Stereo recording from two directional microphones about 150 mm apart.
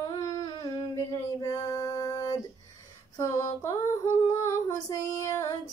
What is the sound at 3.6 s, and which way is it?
Female singing, 20° left (ahead or behind).